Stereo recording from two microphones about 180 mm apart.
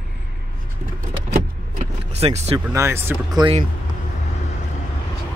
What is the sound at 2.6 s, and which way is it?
Speech, 15° right (ahead or behind).